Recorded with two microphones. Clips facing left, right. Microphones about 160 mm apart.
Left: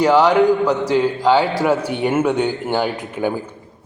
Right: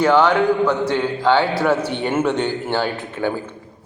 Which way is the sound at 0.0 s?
15° left (ahead or behind).